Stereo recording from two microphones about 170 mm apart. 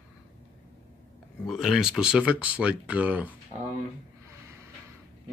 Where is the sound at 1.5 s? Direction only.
Centre (ahead or behind).